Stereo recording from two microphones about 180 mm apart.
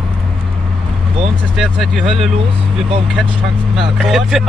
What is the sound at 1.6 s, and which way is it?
Speech, centre (ahead or behind).